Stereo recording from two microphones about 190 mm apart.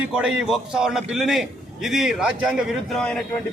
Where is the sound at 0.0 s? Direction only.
5° right (ahead or behind).